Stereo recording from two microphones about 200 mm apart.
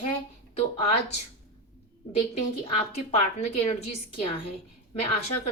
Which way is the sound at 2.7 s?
30° left (ahead or behind).